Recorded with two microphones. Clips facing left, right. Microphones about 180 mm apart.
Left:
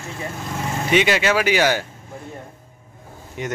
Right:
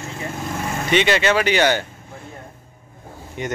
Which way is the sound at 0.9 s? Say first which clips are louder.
Even; 5° left (ahead or behind).